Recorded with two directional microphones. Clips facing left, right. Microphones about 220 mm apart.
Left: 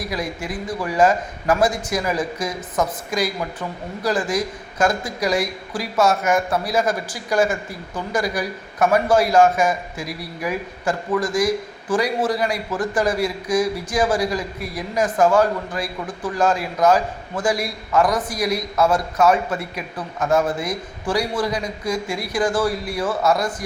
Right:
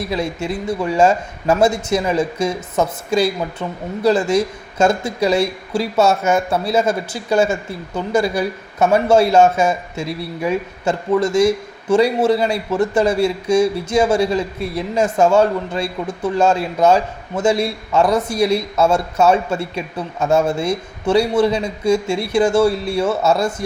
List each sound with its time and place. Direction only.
0.0 s a man's voice: 25° right (ahead or behind)